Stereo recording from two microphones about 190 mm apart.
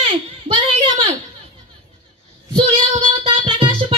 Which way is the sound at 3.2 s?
30° right (ahead or behind).